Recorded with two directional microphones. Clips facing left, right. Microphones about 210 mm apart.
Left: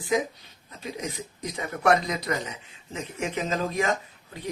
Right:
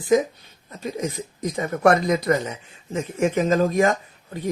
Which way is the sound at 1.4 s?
45° right (ahead or behind).